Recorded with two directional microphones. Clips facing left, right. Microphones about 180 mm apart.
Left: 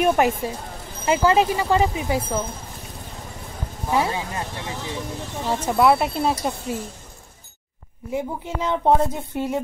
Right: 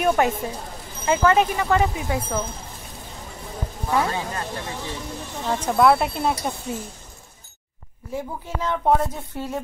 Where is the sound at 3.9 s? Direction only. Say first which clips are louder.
Left 1 dB; 15° left (ahead or behind).